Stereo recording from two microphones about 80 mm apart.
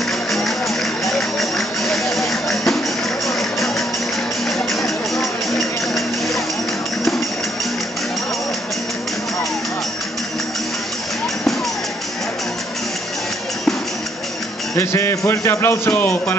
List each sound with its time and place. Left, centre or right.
1.0 s music: centre
14.8 s a man's voice: left